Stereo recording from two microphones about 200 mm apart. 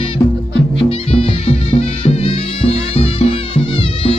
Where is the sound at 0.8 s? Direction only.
30° left (ahead or behind).